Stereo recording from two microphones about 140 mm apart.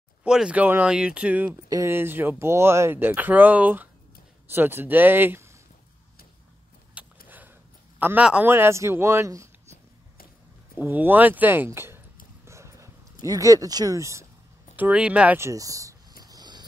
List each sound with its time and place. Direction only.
0.2 s speech: 5° right (ahead or behind)
7.2 s a sound: 15° right (ahead or behind)
8.0 s speech: 10° right (ahead or behind)
10.8 s speech: 15° right (ahead or behind)
12.4 s a sound: 20° right (ahead or behind)
13.2 s speech: 25° right (ahead or behind)
14.8 s speech: 10° right (ahead or behind)
15.3 s speech: 20° right (ahead or behind)
16.3 s a sound: 30° right (ahead or behind)